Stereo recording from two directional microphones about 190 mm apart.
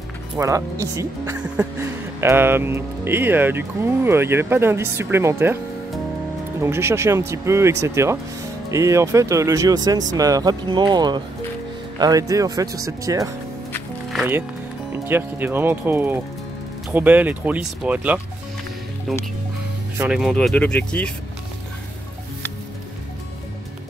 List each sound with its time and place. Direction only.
0.4 s speech: 15° right (ahead or behind)
6.6 s speech: 15° right (ahead or behind)
20.0 s speech: 5° right (ahead or behind)